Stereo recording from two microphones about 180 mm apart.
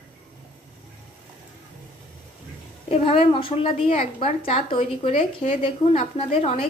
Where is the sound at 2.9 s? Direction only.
35° left (ahead or behind).